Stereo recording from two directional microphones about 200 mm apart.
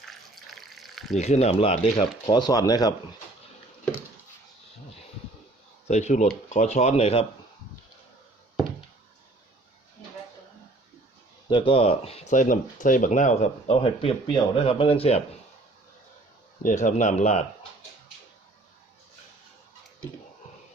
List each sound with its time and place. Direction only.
0.0 s water: centre (ahead or behind)
1.2 s speech: 35° left (ahead or behind)
5.9 s speech: 35° left (ahead or behind)
11.4 s speech: 25° left (ahead or behind)
16.6 s speech: 40° left (ahead or behind)